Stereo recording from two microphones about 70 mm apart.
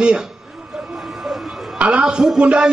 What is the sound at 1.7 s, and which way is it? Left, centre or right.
Speech, centre.